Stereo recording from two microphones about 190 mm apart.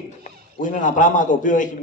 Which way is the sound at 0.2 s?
45° left (ahead or behind).